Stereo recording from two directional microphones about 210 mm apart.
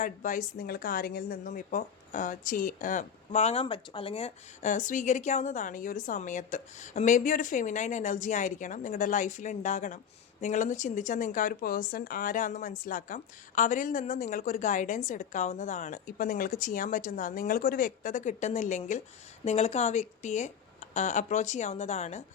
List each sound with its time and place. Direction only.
0.0 s a woman's voice: 40° left (ahead or behind)